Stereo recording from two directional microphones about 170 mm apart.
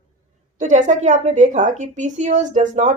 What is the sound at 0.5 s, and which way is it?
Speech, 45° right (ahead or behind).